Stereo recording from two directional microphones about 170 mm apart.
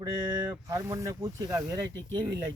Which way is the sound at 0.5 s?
20° right (ahead or behind).